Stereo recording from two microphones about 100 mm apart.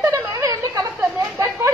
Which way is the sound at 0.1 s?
35° right (ahead or behind).